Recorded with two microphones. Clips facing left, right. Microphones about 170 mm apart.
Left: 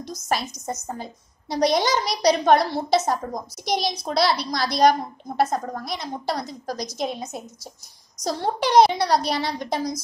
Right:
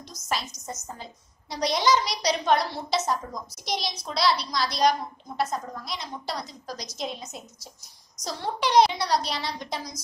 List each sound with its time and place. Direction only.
0.0 s a child's voice: 55° left (ahead or behind)